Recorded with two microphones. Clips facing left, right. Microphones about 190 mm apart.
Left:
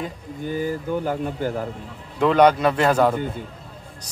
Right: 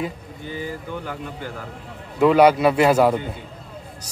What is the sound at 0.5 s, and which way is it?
Speech, 45° left (ahead or behind).